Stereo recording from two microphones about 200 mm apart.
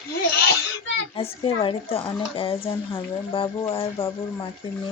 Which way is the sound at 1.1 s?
25° left (ahead or behind).